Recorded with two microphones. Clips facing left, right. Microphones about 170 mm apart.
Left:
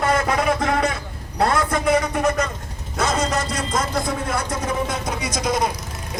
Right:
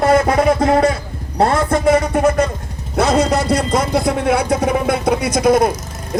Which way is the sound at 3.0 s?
65° right (ahead or behind).